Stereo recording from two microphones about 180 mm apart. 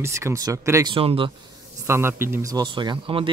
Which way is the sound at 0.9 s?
30° right (ahead or behind).